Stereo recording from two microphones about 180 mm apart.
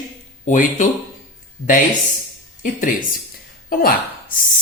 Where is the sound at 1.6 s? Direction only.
60° left (ahead or behind).